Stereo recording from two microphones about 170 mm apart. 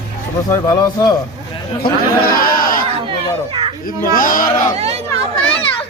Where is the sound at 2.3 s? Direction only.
60° left (ahead or behind).